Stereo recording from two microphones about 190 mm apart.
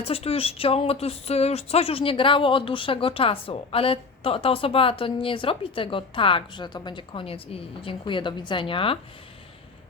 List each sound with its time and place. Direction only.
0.0 s speech: 30° left (ahead or behind)